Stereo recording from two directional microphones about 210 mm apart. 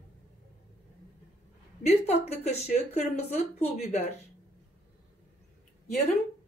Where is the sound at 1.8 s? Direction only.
30° left (ahead or behind).